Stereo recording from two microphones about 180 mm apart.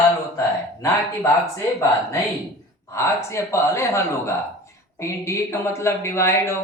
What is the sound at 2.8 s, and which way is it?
A man's voice, 15° left (ahead or behind).